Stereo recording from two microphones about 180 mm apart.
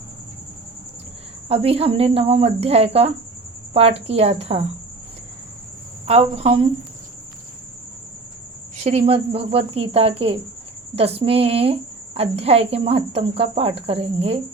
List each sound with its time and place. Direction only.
1.5 s speech: 35° right (ahead or behind)
6.1 s speech: 35° right (ahead or behind)
8.8 s speech: 35° right (ahead or behind)